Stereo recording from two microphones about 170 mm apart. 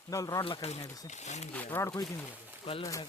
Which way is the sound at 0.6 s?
40° left (ahead or behind).